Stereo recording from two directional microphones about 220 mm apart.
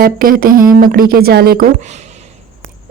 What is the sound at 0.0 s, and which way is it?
A woman's voice, 40° right (ahead or behind).